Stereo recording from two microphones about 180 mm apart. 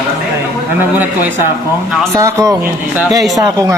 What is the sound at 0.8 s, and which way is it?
Speech, 10° right (ahead or behind).